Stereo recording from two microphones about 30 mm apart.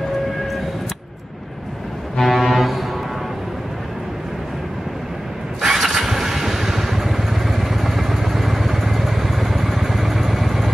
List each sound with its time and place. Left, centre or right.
2.1 s foghorn: centre
5.6 s vehicle: centre
5.9 s motorcycle: centre